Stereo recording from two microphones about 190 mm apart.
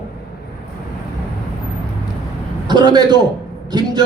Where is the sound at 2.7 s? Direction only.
20° right (ahead or behind).